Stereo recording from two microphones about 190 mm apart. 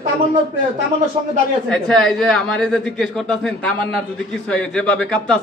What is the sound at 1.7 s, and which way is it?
A man's voice, 5° left (ahead or behind).